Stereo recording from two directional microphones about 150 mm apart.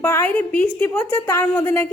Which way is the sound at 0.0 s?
15° left (ahead or behind).